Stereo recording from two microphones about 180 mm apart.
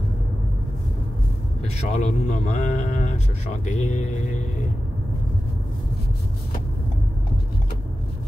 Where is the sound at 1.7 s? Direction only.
40° left (ahead or behind).